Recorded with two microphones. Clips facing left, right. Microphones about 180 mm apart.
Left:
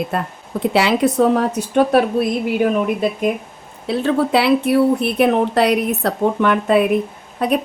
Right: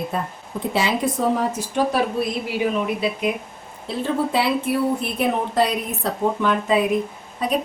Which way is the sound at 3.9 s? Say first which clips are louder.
Left 6 dB; 80° left.